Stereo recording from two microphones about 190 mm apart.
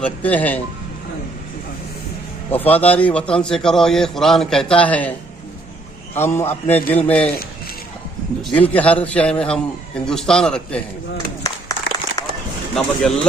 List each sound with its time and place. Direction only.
0.0 s a man's voice: 10° left (ahead or behind)
2.5 s a man's voice: 10° left (ahead or behind)
6.1 s a man's voice: 10° left (ahead or behind)
8.4 s a man's voice: 10° left (ahead or behind)
12.2 s a sound: 20° left (ahead or behind)
12.7 s a man's voice: 5° left (ahead or behind)